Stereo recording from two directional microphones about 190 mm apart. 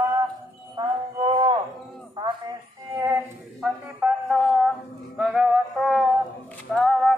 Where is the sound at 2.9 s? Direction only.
15° right (ahead or behind).